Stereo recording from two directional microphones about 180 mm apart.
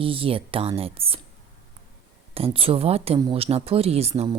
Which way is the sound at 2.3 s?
30° right (ahead or behind).